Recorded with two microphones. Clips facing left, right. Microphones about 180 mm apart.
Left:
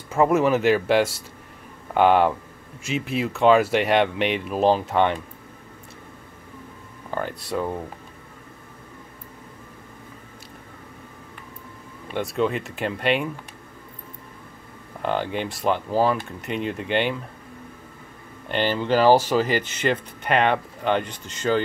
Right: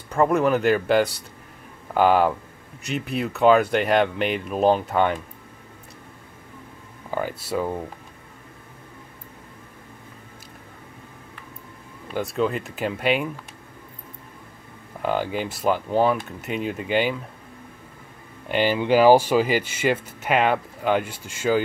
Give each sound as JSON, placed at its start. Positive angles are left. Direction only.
{"t": 0.1, "sound": "speech", "side_deg": 5}
{"t": 7.1, "sound": "speech", "side_deg": -5}
{"t": 12.1, "sound": "speech", "side_deg": 0}
{"t": 15.0, "sound": "speech", "side_deg": -5}
{"t": 18.5, "sound": "speech", "side_deg": -10}